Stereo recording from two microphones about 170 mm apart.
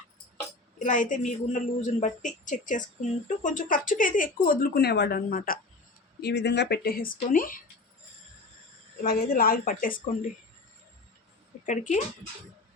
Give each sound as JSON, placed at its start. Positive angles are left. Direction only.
{"t": 0.8, "sound": "speech", "side_deg": 50}
{"t": 6.2, "sound": "speech", "side_deg": 90}
{"t": 9.0, "sound": "speech", "side_deg": 60}
{"t": 11.6, "sound": "speech", "side_deg": 45}